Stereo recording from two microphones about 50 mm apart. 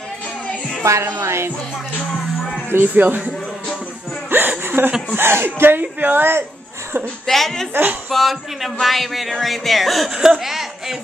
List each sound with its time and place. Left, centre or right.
0.8 s speech: right
1.2 s music: right
2.7 s speech: right
4.3 s hiccup: right
5.1 s speech: right
7.2 s speech: centre
7.7 s speech: right
8.1 s speech: centre
10.4 s a sound: centre